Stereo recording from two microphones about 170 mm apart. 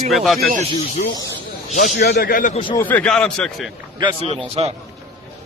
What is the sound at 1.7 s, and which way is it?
Speech, 50° left (ahead or behind).